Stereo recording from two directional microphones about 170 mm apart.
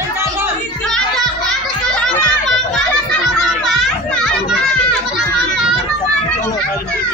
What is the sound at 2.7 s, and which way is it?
Children playing, centre (ahead or behind).